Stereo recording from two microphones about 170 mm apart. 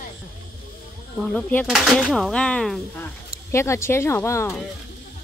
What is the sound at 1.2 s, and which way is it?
Speech, 5° left (ahead or behind).